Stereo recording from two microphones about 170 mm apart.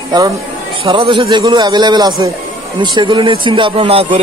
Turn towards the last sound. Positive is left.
turn(degrees=-35)  # may be behind; listen again after turning